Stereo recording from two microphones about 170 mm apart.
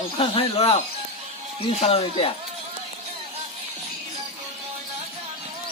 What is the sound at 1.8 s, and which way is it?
Speech, 35° left (ahead or behind).